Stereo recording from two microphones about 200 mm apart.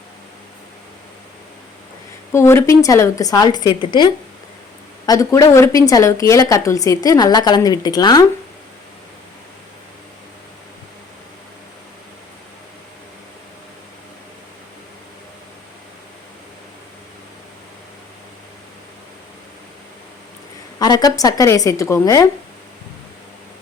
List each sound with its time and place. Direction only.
2.3 s a woman's voice: 15° left (ahead or behind)
20.7 s a woman's voice: 20° left (ahead or behind)